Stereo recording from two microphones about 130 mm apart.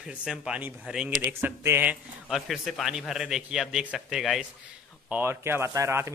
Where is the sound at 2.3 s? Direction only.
Centre (ahead or behind).